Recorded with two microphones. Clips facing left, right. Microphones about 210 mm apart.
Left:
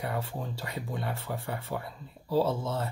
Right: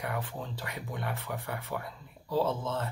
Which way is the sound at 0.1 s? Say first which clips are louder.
Left 2 dB; 15° left (ahead or behind).